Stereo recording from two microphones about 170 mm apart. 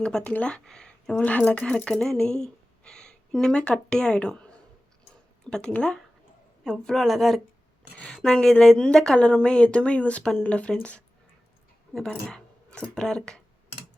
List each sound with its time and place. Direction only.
0.0 s speech: 5° left (ahead or behind)